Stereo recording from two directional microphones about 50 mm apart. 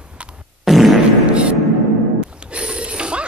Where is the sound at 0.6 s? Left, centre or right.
Centre.